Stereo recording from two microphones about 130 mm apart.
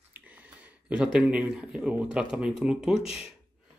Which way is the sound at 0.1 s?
10° right (ahead or behind).